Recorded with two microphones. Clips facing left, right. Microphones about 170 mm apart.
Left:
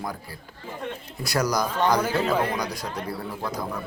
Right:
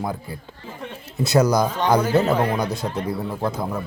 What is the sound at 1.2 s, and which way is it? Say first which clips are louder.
Speech: right 7 dB; 25° right (ahead or behind).